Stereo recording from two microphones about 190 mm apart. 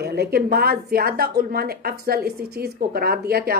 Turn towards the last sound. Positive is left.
turn(degrees=-55)  # may be behind; listen again after turning